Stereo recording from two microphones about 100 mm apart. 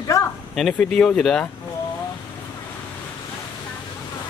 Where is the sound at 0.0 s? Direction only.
30° left (ahead or behind).